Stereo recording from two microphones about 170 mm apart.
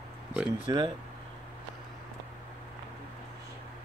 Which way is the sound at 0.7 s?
25° right (ahead or behind).